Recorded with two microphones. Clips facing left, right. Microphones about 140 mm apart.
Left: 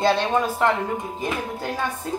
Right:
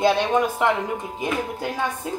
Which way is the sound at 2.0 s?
10° right (ahead or behind).